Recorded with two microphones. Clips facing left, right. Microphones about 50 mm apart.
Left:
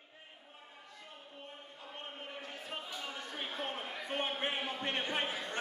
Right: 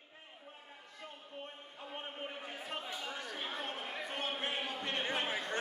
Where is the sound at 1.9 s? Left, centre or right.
Centre.